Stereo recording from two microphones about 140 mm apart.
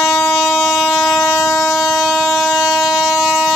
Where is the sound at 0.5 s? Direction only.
5° right (ahead or behind).